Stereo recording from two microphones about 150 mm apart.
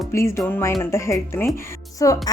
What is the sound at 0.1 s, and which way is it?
Speech, 20° left (ahead or behind).